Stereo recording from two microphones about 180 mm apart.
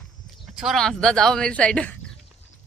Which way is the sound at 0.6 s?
Centre (ahead or behind).